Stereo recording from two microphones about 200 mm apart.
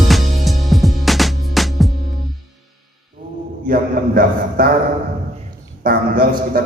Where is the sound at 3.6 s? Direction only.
45° right (ahead or behind).